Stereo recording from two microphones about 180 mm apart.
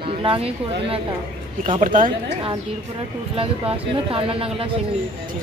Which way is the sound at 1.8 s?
50° right (ahead or behind).